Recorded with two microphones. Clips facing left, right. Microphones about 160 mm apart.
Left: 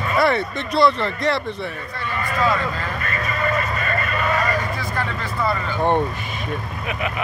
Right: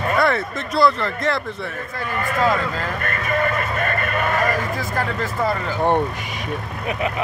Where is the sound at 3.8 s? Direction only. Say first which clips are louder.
Right 2 dB; 55° right (ahead or behind).